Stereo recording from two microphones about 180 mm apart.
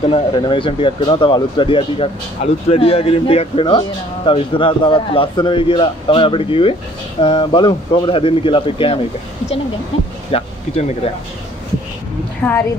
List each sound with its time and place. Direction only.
0.1 s speech: 30° left (ahead or behind)
10.3 s speech: 35° left (ahead or behind)
12.4 s a woman's voice: 10° left (ahead or behind)